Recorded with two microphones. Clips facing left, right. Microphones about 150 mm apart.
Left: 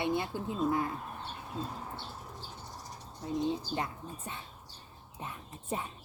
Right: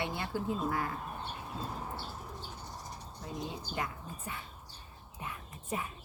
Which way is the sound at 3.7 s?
25° left (ahead or behind).